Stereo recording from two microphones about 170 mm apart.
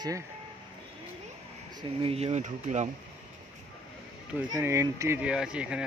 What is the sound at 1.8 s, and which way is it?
Speech, 35° right (ahead or behind).